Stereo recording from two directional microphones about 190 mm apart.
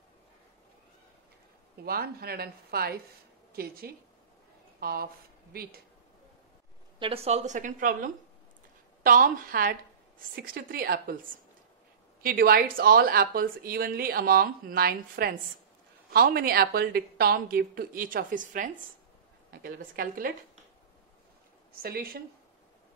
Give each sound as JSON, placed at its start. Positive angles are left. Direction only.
{"t": 1.8, "sound": "speech", "side_deg": -55}
{"t": 7.0, "sound": "a woman's voice", "side_deg": -30}
{"t": 12.2, "sound": "speech", "side_deg": -50}
{"t": 21.8, "sound": "speech", "side_deg": -50}